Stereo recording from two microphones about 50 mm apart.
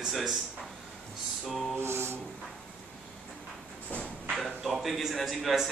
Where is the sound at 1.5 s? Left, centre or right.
Centre.